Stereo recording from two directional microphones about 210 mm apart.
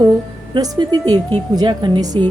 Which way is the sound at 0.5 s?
20° right (ahead or behind).